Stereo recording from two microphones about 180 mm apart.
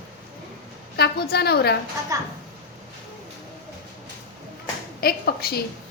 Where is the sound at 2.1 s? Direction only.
20° right (ahead or behind).